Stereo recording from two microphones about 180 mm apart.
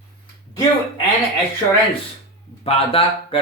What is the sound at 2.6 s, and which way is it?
Speech, 30° left (ahead or behind).